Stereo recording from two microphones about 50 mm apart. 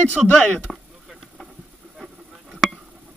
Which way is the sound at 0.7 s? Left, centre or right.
Centre.